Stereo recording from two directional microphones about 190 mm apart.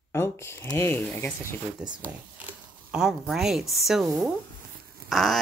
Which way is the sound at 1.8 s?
5° right (ahead or behind).